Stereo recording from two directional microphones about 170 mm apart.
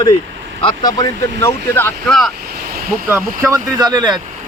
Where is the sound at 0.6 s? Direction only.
25° left (ahead or behind).